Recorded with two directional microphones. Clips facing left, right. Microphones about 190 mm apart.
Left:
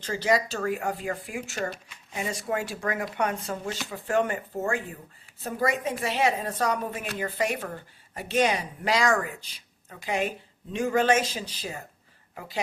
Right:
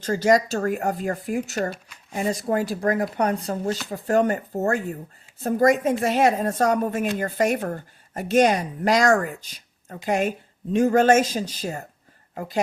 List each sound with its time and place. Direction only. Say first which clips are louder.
0.0 s speech: right 6 dB; 45° right (ahead or behind)